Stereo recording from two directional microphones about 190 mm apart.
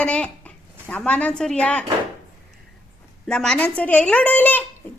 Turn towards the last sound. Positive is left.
turn(degrees=10)  # may be behind; listen again after turning